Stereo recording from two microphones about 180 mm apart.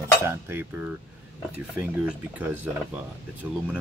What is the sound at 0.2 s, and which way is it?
Speech, 15° right (ahead or behind).